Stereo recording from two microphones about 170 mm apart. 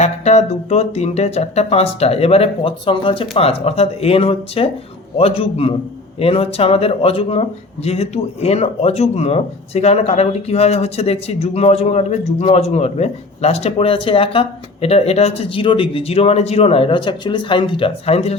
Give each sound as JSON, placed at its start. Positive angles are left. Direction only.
{"t": 0.0, "sound": "speech", "side_deg": 40}